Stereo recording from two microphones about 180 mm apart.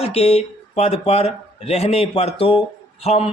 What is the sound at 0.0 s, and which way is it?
A man's voice, 35° left (ahead or behind).